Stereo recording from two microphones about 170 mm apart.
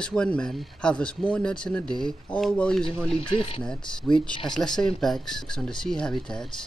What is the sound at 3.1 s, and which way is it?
Speech, 30° left (ahead or behind).